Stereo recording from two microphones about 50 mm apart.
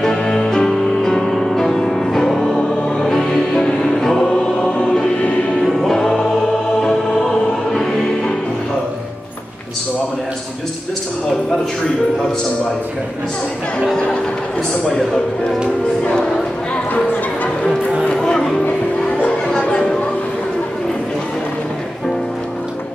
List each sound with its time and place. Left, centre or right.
0.0 s music: centre
4.3 s choir: centre
5.6 s music: centre
13.9 s music: left
14.9 s music: centre
18.0 s music: centre
19.6 s a sound: left